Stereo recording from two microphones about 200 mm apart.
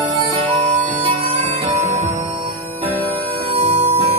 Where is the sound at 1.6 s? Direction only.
35° right (ahead or behind).